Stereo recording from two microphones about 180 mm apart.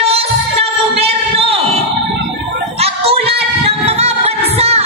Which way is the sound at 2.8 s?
35° right (ahead or behind).